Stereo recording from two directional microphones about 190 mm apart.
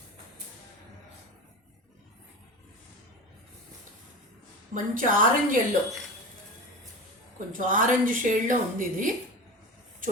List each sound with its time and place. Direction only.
4.7 s a woman's voice: 45° right (ahead or behind)
7.3 s a woman's voice: 45° right (ahead or behind)